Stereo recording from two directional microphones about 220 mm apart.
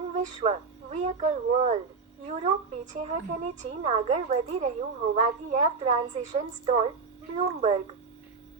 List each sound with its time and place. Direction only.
0.1 s a woman's voice: 30° right (ahead or behind)